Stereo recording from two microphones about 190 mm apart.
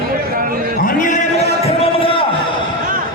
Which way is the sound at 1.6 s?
30° left (ahead or behind).